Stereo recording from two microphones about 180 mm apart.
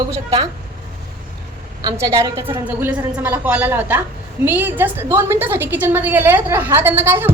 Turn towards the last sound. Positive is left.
turn(degrees=-15)  # may be behind; listen again after turning